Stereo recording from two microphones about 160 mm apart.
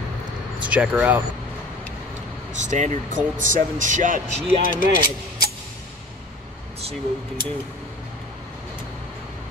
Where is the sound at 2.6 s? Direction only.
50° right (ahead or behind).